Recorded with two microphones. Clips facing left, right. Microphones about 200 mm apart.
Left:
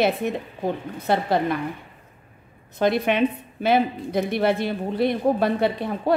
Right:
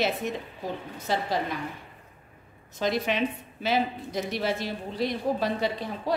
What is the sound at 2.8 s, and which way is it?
A woman's voice, 60° left (ahead or behind).